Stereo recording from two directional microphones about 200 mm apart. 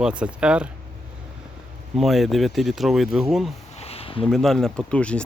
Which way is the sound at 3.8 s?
30° left (ahead or behind).